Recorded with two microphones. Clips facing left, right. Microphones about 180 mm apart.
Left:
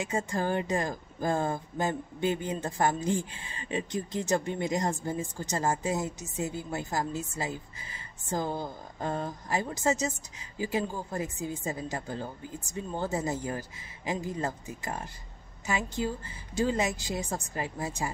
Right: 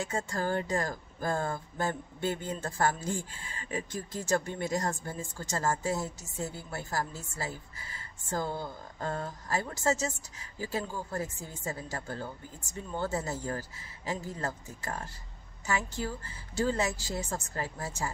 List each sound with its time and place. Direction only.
0.0 s speech: 15° left (ahead or behind)